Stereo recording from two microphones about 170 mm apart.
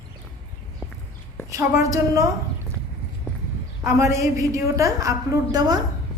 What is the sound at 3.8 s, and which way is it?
A woman's voice, 15° right (ahead or behind).